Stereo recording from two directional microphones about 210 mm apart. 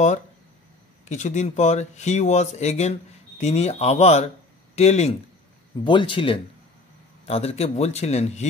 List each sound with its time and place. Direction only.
1.0 s speech: 35° left (ahead or behind)